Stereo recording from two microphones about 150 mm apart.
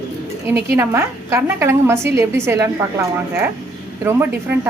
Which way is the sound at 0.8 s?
15° right (ahead or behind).